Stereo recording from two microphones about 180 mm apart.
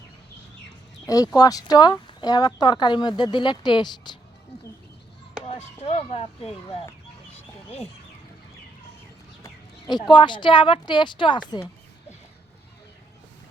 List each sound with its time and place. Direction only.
1.0 s speech: 20° left (ahead or behind)
5.5 s speech: 35° left (ahead or behind)
9.4 s speech: 25° left (ahead or behind)